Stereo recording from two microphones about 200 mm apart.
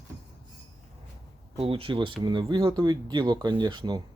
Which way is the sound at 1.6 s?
30° right (ahead or behind).